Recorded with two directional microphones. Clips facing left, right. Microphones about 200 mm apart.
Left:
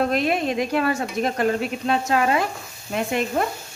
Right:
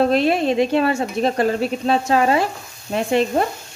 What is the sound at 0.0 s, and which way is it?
Speech, 30° right (ahead or behind).